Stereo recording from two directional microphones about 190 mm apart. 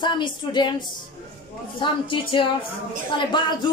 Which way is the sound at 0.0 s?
25° left (ahead or behind).